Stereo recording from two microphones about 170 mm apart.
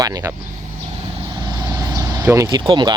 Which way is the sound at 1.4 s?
20° right (ahead or behind).